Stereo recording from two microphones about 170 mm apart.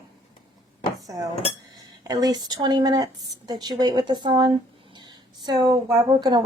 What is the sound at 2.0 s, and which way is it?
A woman's voice, 20° right (ahead or behind).